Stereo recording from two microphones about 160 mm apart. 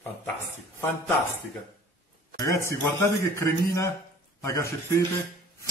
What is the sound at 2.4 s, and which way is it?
A man's voice, 20° left (ahead or behind).